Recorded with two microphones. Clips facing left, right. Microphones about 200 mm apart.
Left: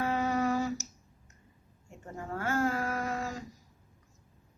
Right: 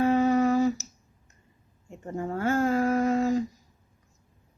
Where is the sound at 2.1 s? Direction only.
30° right (ahead or behind).